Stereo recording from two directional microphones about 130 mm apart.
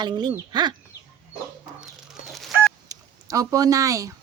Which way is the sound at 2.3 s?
Centre (ahead or behind).